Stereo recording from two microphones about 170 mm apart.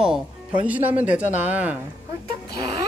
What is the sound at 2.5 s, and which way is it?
Music, 65° left (ahead or behind).